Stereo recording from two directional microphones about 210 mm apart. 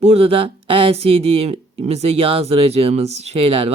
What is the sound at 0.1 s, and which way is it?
Speech, 25° right (ahead or behind).